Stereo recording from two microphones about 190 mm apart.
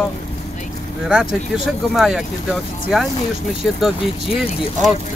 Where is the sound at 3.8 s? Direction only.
Centre (ahead or behind).